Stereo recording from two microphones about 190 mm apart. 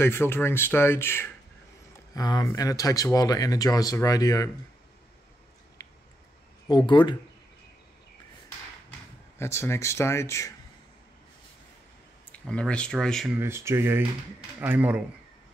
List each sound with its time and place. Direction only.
0.0 s speech: 10° left (ahead or behind)
5.8 s a sound: 15° left (ahead or behind)
6.7 s speech: 25° left (ahead or behind)
9.4 s speech: 15° left (ahead or behind)
12.3 s speech: 5° left (ahead or behind)
13.3 s speech: 15° right (ahead or behind)